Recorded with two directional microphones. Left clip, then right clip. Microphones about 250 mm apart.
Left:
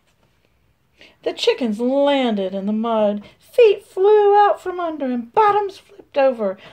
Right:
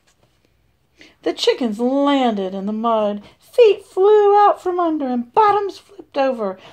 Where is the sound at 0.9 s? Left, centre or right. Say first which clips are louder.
Right 2 dB; right.